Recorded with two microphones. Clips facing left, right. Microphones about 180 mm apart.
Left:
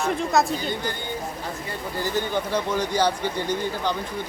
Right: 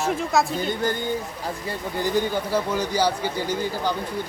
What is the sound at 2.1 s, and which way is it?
Speech, 10° right (ahead or behind).